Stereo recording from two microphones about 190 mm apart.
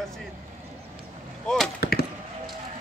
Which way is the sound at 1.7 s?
55° left (ahead or behind).